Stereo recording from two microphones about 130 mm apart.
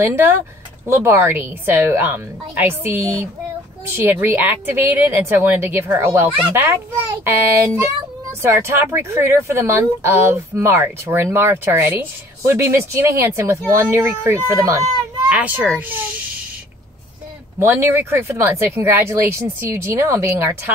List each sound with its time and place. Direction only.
0.0 s speech: 15° right (ahead or behind)
15.2 s a child's voice: 10° right (ahead or behind)
17.6 s speech: 20° right (ahead or behind)